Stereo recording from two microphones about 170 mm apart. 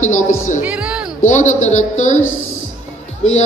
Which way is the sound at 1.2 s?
45° left (ahead or behind).